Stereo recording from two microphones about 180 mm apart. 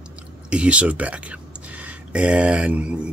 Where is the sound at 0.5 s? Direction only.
5° right (ahead or behind).